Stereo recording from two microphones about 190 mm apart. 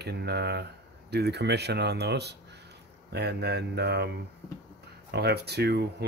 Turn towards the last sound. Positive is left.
turn(degrees=-60)  # may be behind; listen again after turning